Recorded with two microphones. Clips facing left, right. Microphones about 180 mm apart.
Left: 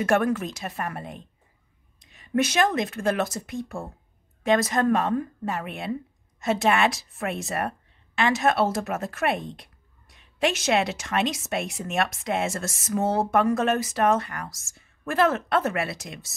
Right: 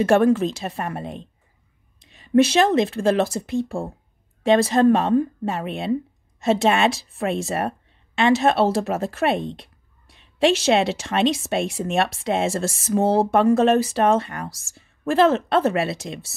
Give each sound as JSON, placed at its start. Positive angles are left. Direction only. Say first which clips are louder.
{"t": 0.0, "sound": "speech", "louder": "right 6 dB", "side_deg": -30}